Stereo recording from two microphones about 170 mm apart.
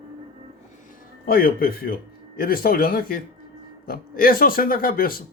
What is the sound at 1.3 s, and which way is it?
Speech, 60° left (ahead or behind).